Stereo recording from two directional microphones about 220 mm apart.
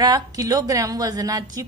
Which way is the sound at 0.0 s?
15° right (ahead or behind).